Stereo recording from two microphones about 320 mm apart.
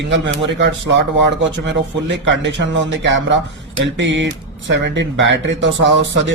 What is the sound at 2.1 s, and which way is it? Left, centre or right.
Speech, right.